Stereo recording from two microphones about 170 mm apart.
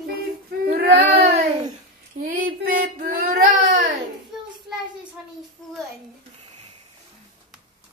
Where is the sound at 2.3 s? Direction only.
55° right (ahead or behind).